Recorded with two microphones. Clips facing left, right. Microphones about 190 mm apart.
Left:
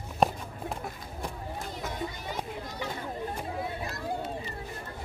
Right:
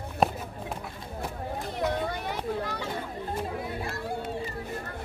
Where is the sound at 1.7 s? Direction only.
65° right (ahead or behind).